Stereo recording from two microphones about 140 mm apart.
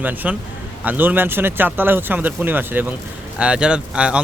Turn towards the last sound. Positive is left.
turn(degrees=-5)  # may be behind; listen again after turning